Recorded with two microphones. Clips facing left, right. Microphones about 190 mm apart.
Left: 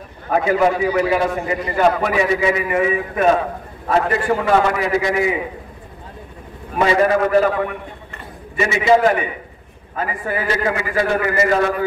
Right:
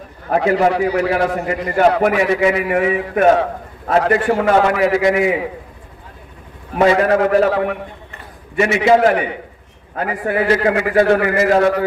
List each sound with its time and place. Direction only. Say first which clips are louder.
0.3 s a man's voice: right 1 dB; 75° right (ahead or behind)
7.0 s a man's voice: right 1 dB; 70° right (ahead or behind)